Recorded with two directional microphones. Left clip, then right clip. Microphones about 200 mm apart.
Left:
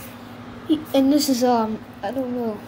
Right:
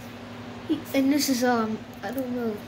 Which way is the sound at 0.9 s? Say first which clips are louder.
Left 5 dB; 10° left (ahead or behind).